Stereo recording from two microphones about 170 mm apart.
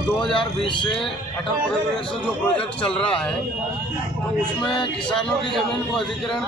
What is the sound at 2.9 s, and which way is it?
Speech, 5° left (ahead or behind).